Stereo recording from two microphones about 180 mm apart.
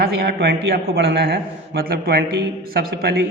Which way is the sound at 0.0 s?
65° right (ahead or behind).